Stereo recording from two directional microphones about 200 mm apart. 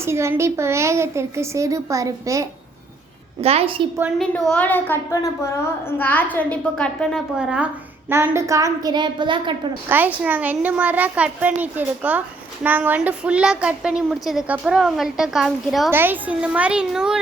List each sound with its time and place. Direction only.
0.0 s speech: 15° right (ahead or behind)
3.4 s a woman's voice: 30° right (ahead or behind)
4.2 s a woman's voice: centre (ahead or behind); by 9.6 s 25° right (ahead or behind)
9.9 s a woman's voice: 10° right (ahead or behind)